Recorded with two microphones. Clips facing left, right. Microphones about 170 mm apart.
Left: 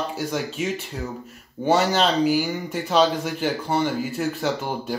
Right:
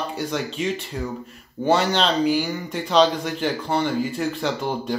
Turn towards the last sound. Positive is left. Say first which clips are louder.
# right 1 dB
turn(degrees=10)  # may be behind; listen again after turning